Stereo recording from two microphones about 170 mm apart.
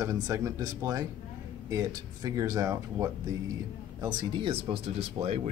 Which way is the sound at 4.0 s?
30° right (ahead or behind).